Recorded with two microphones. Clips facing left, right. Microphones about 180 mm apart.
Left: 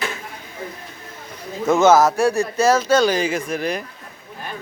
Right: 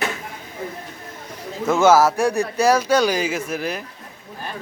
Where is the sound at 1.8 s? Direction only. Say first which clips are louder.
Left 1 dB; 10° right (ahead or behind).